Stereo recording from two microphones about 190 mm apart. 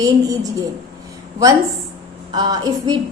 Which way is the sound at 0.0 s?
20° right (ahead or behind).